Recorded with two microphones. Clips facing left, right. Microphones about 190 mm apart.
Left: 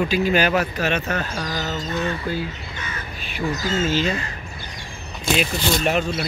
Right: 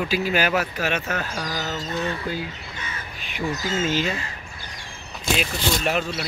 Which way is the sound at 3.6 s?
15° right (ahead or behind).